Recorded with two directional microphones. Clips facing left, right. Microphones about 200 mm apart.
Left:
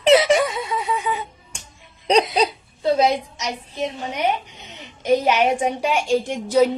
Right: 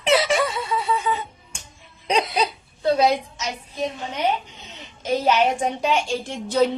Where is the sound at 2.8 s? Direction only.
20° left (ahead or behind).